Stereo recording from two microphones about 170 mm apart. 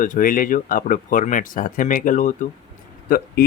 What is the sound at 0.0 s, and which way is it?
Speech, 55° left (ahead or behind).